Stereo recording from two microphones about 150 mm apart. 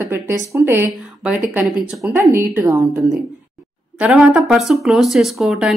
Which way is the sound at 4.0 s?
5° right (ahead or behind).